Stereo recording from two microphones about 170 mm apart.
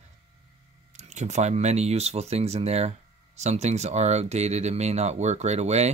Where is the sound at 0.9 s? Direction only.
40° right (ahead or behind).